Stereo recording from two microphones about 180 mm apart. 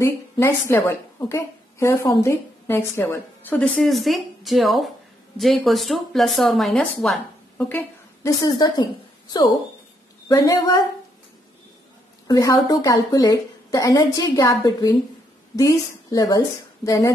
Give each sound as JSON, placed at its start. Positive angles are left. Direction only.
{"t": 0.0, "sound": "a woman's voice", "side_deg": 15}
{"t": 10.2, "sound": "a woman's voice", "side_deg": 20}
{"t": 12.3, "sound": "a woman's voice", "side_deg": 20}